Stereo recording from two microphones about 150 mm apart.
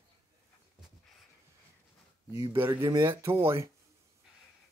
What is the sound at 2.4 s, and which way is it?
Speech, 15° right (ahead or behind).